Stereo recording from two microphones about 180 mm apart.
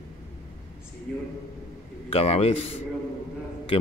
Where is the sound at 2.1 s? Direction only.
35° left (ahead or behind).